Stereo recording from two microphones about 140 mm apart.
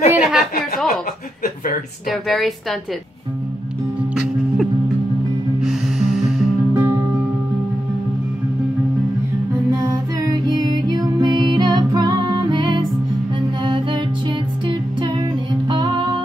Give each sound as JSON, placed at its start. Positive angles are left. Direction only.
{"t": 0.1, "sound": "a sound", "side_deg": -5}
{"t": 2.0, "sound": "a woman's voice", "side_deg": 0}
{"t": 5.6, "sound": "music", "side_deg": -5}
{"t": 6.7, "sound": "music", "side_deg": -20}
{"t": 10.3, "sound": "music", "side_deg": -30}
{"t": 15.7, "sound": "music", "side_deg": -35}